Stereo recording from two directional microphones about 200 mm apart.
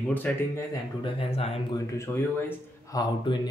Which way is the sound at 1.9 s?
15° left (ahead or behind).